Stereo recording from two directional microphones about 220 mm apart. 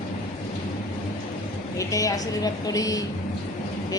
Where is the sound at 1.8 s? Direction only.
15° left (ahead or behind).